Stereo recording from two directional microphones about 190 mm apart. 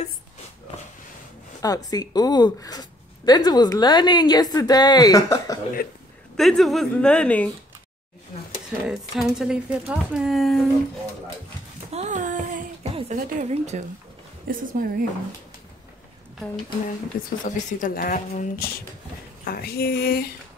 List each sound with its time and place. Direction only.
1.6 s speech: 20° left (ahead or behind)
5.8 s speech: 55° left (ahead or behind)
6.3 s speech: centre (ahead or behind)
8.8 s speech: centre (ahead or behind)
11.9 s a sound: 40° right (ahead or behind)
12.9 s a woman's voice: 40° right (ahead or behind)
17.1 s speech: 50° left (ahead or behind)
19.4 s speech: 55° left (ahead or behind)